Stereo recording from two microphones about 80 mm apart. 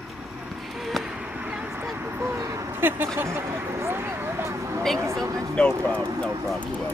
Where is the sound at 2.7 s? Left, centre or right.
Right.